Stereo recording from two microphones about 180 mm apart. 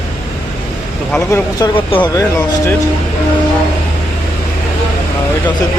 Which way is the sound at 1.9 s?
25° left (ahead or behind).